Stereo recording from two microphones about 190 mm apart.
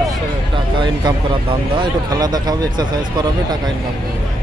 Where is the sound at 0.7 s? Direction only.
25° right (ahead or behind).